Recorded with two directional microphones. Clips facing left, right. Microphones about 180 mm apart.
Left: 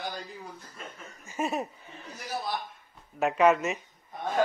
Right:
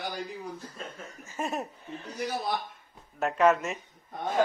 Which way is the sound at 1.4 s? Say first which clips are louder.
Left 2 dB; centre (ahead or behind).